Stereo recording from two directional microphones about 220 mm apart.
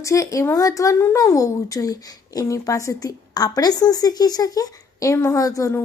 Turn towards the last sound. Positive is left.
turn(degrees=15)  # may be behind; listen again after turning